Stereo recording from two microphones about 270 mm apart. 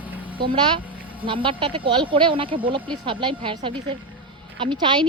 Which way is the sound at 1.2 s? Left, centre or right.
Centre.